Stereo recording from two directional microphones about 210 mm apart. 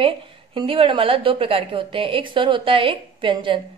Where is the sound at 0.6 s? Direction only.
25° right (ahead or behind).